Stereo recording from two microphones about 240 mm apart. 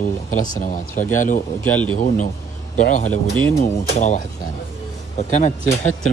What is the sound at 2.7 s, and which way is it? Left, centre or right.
Speech, left.